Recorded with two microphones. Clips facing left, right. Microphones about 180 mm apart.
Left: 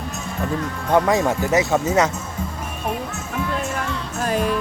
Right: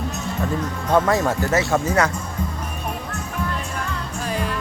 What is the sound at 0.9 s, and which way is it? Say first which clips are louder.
Speech: left 1 dB; 15° left (ahead or behind).